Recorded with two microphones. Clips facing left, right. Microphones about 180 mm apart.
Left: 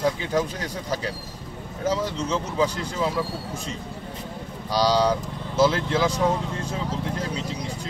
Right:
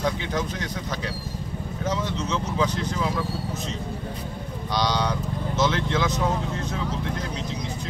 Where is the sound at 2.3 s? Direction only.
30° left (ahead or behind).